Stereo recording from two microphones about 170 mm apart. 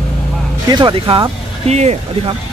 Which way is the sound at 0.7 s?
30° right (ahead or behind).